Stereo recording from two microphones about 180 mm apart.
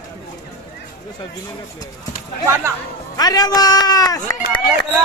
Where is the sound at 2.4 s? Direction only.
15° right (ahead or behind).